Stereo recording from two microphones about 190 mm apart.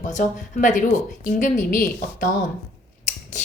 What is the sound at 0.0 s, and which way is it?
Speech, 40° left (ahead or behind).